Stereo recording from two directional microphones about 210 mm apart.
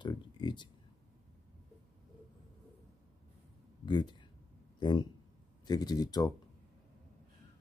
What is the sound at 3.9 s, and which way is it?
Speech, 20° left (ahead or behind).